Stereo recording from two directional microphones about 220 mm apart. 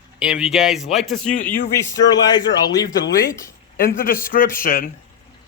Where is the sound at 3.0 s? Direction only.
40° left (ahead or behind).